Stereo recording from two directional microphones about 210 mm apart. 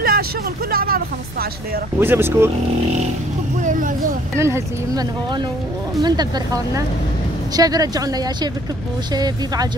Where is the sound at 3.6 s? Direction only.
40° right (ahead or behind).